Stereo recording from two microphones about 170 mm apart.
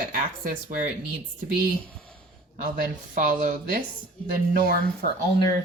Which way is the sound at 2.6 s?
55° right (ahead or behind).